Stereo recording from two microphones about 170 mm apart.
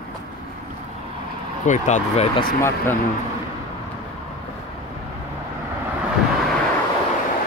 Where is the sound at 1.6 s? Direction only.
45° left (ahead or behind).